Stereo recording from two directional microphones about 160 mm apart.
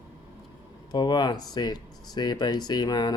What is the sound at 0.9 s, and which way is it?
Speech, 25° left (ahead or behind).